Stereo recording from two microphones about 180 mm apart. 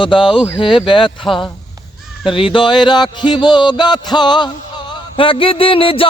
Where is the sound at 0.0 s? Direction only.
25° left (ahead or behind).